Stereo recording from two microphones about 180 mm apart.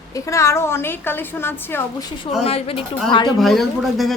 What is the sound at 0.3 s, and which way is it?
A woman's voice, 15° left (ahead or behind).